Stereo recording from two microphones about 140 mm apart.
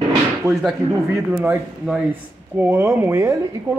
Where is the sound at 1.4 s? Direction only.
15° right (ahead or behind).